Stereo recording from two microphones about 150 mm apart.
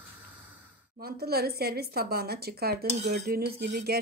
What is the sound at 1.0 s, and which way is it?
Speech, 90° right.